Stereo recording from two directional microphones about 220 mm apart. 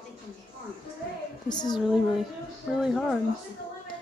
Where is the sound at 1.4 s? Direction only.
20° left (ahead or behind).